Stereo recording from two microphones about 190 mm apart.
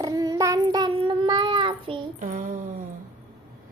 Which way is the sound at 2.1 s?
45° right (ahead or behind).